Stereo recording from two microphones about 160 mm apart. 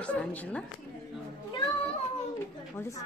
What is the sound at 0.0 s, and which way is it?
Speech, 10° left (ahead or behind).